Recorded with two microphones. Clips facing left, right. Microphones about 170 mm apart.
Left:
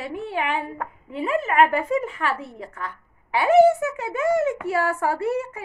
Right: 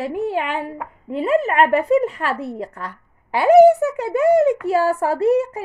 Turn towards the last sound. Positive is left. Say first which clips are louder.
# right 7 dB
turn(degrees=-35)  # may be behind; listen again after turning